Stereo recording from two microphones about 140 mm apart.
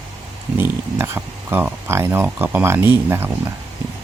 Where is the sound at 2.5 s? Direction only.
15° right (ahead or behind).